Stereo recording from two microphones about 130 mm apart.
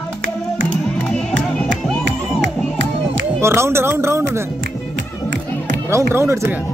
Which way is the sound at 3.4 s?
20° right (ahead or behind).